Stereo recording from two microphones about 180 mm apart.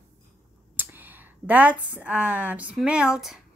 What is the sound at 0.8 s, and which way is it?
A woman's voice, 10° right (ahead or behind).